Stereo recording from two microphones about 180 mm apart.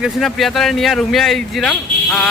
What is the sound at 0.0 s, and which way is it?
Speech, centre (ahead or behind).